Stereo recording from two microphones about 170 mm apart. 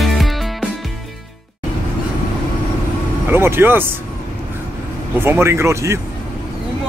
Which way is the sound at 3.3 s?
15° right (ahead or behind).